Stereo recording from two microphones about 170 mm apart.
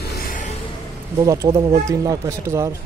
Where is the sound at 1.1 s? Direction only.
20° right (ahead or behind).